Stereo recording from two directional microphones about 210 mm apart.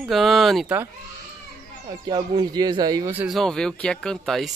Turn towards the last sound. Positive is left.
turn(degrees=0)  # may be behind; listen again after turning